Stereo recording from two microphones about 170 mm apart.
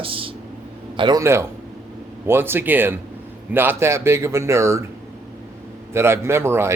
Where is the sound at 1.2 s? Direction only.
15° right (ahead or behind).